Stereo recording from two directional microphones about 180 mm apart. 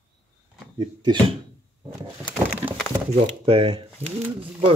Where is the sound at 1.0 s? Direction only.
25° right (ahead or behind).